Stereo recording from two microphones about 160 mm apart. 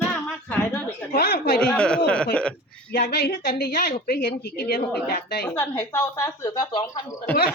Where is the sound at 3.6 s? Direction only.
80° left.